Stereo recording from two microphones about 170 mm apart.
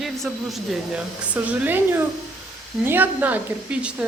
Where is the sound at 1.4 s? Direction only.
10° right (ahead or behind).